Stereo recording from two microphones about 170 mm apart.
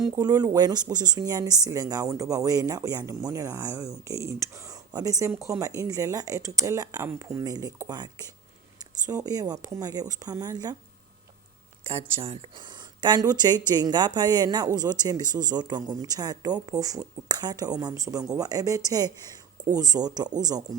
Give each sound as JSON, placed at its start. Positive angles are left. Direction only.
{"t": 0.2, "sound": "speech", "side_deg": -20}
{"t": 11.9, "sound": "speech", "side_deg": -35}